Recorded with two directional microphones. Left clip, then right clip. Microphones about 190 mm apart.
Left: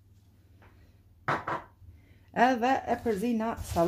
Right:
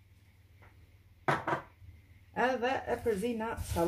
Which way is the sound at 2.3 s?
50° left (ahead or behind).